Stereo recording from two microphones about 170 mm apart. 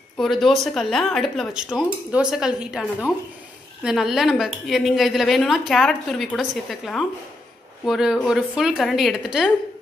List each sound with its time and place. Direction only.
0.2 s speech: centre (ahead or behind)